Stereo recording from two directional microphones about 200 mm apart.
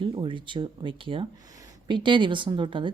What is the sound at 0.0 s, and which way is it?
Speech, 25° right (ahead or behind).